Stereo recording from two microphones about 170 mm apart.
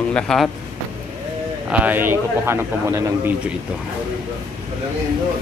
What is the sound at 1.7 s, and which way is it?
A man's voice, 10° right (ahead or behind).